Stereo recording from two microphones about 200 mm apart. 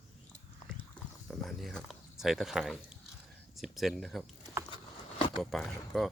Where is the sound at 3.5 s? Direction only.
Centre (ahead or behind).